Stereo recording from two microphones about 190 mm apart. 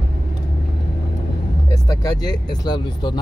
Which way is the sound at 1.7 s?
20° left (ahead or behind).